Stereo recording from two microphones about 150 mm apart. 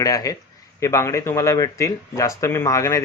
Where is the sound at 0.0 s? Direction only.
25° left (ahead or behind).